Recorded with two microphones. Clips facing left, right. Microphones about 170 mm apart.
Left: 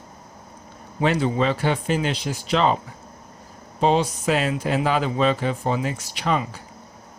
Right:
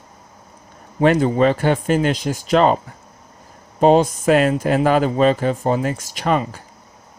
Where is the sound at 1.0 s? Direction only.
50° right (ahead or behind).